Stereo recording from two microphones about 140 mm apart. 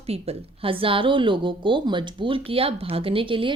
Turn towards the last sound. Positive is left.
turn(degrees=-40)  # may be behind; listen again after turning